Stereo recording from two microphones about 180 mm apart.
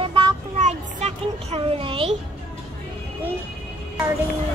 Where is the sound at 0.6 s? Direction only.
35° right (ahead or behind).